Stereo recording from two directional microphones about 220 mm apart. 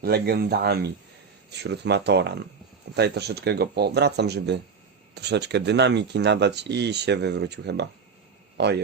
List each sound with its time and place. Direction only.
0.0 s a man's voice: 45° right (ahead or behind)